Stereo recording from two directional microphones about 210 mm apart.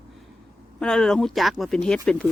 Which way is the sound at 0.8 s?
5° left (ahead or behind).